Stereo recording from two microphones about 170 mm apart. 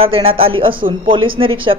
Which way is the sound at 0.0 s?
30° right (ahead or behind).